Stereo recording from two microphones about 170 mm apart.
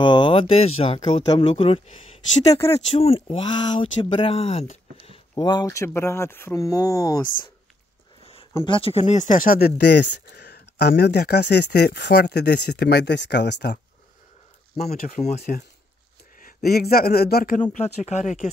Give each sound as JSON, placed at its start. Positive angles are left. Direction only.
{"t": 0.0, "sound": "speech", "side_deg": 30}
{"t": 2.9, "sound": "speech", "side_deg": 35}
{"t": 5.3, "sound": "speech", "side_deg": 25}
{"t": 8.6, "sound": "speech", "side_deg": 30}
{"t": 15.0, "sound": "speech", "side_deg": 50}
{"t": 16.3, "sound": "speech", "side_deg": 60}
{"t": 17.7, "sound": "speech", "side_deg": 40}